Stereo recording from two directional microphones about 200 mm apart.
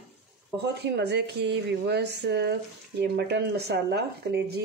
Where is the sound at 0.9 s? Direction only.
55° right (ahead or behind).